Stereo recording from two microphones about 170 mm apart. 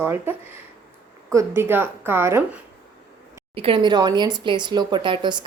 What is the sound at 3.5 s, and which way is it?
Speech, 35° right (ahead or behind).